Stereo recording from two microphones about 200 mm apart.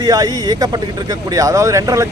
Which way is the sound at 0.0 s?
20° right (ahead or behind).